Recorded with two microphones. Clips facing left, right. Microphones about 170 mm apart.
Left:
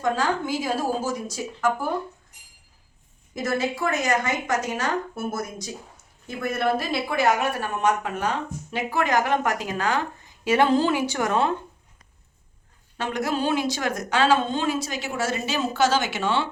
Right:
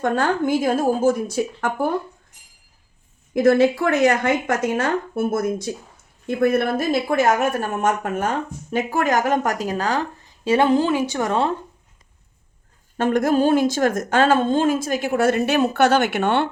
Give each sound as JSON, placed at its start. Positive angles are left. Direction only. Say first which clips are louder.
{"t": 0.0, "sound": "a woman's voice", "louder": "right 4 dB", "side_deg": -55}
{"t": 3.3, "sound": "a woman's voice", "louder": "right 11 dB", "side_deg": -55}
{"t": 10.7, "sound": "a woman's voice", "louder": "right 3 dB", "side_deg": -15}
{"t": 13.0, "sound": "speech", "louder": "right 8 dB", "side_deg": -50}